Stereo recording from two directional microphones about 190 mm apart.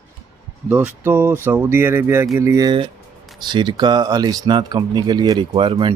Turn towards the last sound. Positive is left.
turn(degrees=-25)  # may be behind; listen again after turning